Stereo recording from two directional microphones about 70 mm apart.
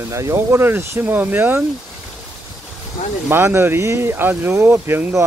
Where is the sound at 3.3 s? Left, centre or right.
Right.